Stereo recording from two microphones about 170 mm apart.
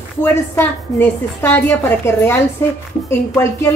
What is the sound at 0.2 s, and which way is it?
A woman's voice, 15° left (ahead or behind).